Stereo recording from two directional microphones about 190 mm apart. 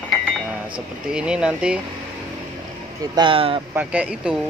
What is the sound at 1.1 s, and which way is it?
Speech, 5° right (ahead or behind).